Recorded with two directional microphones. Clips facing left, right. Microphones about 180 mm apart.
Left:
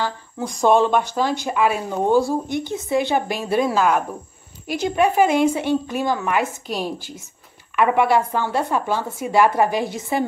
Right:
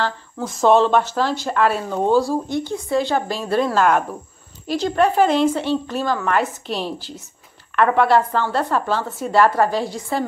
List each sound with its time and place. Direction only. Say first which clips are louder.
0.0 s speech: right 1 dB; 15° left (ahead or behind)